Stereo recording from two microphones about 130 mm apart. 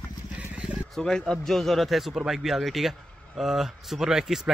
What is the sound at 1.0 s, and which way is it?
Speech, 5° left (ahead or behind).